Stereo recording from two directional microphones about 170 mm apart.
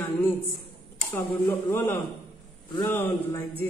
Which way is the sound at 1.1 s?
10° left (ahead or behind).